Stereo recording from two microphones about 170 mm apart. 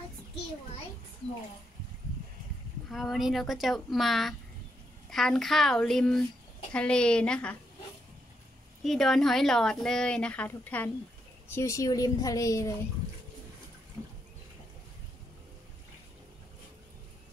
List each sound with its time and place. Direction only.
2.9 s a woman's voice: centre (ahead or behind)
8.8 s a woman's voice: centre (ahead or behind); by 12.7 s 20° left (ahead or behind)